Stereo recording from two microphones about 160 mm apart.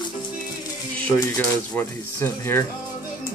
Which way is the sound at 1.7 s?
15° left (ahead or behind).